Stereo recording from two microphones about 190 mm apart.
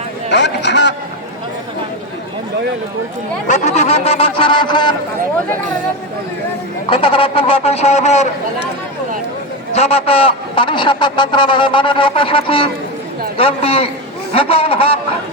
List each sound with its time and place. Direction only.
0.3 s a sound: 65° left (ahead or behind)
3.4 s speech: 40° left (ahead or behind); by 4.9 s 25° left (ahead or behind)
6.9 s speech: 30° left (ahead or behind)
9.7 s a man's voice: 35° left (ahead or behind)